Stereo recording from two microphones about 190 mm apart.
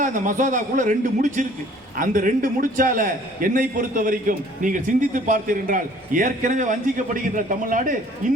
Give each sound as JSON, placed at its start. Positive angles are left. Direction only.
{"t": 0.0, "sound": "a man's voice", "side_deg": -40}